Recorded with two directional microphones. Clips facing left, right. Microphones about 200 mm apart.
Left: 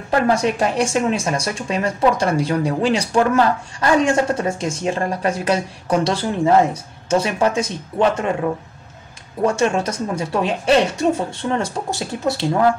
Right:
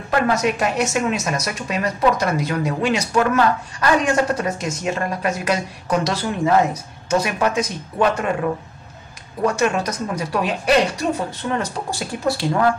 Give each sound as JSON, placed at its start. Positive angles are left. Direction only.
{"t": 0.1, "sound": "speech", "side_deg": 30}
{"t": 9.4, "sound": "speech", "side_deg": 25}